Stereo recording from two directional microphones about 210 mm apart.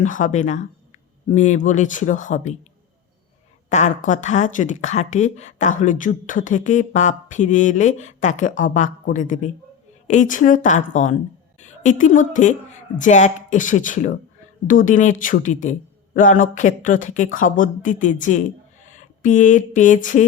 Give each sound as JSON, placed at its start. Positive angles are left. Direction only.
{"t": 0.0, "sound": "speech", "side_deg": 35}
{"t": 3.7, "sound": "a woman's voice", "side_deg": 35}